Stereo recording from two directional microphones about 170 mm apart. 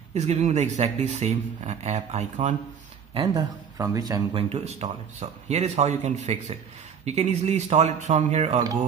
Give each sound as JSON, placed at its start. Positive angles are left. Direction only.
{"t": 0.1, "sound": "speech", "side_deg": -40}
{"t": 3.2, "sound": "speech", "side_deg": -20}